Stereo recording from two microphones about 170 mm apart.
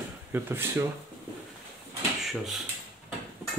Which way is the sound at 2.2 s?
Centre (ahead or behind).